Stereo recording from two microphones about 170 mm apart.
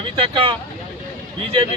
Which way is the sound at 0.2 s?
30° right (ahead or behind).